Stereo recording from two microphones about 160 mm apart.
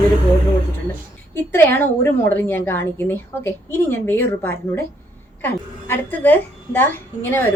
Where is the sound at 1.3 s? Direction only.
15° left (ahead or behind).